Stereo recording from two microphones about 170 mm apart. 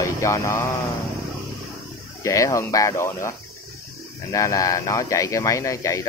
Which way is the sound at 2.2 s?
20° left (ahead or behind).